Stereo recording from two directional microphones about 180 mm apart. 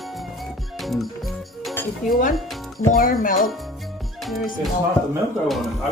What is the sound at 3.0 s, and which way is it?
Speech, 50° left (ahead or behind).